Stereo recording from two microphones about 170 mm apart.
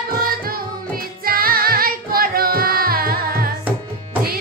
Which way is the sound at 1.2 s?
60° right (ahead or behind).